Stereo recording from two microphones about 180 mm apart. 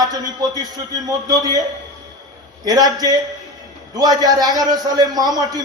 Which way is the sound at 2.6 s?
20° right (ahead or behind).